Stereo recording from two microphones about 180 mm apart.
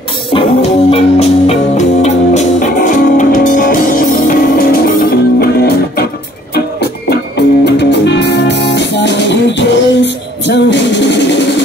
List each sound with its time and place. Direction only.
0.3 s music: 35° left (ahead or behind); by 5.5 s 55° left (ahead or behind)
6.5 s music: 65° left (ahead or behind)